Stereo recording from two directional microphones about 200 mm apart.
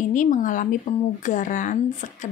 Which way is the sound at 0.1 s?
40° left (ahead or behind).